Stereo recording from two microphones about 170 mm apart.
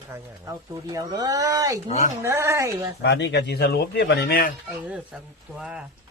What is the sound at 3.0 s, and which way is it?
Speech, 90° left.